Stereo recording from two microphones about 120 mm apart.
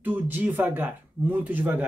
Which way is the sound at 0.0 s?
15° right (ahead or behind).